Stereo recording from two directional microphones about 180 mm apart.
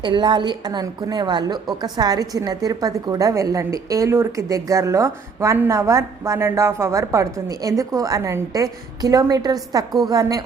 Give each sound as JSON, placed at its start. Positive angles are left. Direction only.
{"t": 0.0, "sound": "a woman's voice", "side_deg": -25}